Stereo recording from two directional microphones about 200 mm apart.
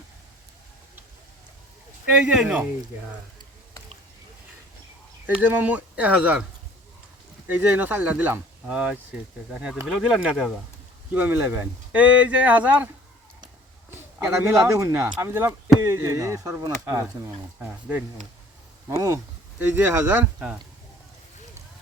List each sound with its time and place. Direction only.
2.2 s speech: 5° right (ahead or behind)
5.2 s speech: 10° right (ahead or behind)
7.4 s speech: 10° right (ahead or behind)
13.9 s speech: 15° right (ahead or behind)
18.9 s speech: 15° right (ahead or behind)